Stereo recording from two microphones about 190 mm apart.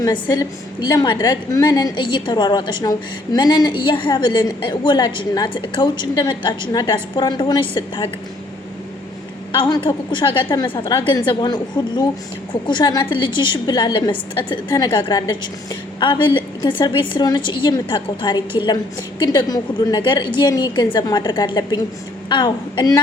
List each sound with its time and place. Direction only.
0.0 s a woman's voice: 20° left (ahead or behind)
9.5 s a woman's voice: 25° left (ahead or behind)